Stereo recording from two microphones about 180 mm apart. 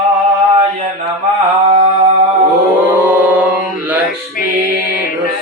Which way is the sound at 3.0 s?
10° right (ahead or behind).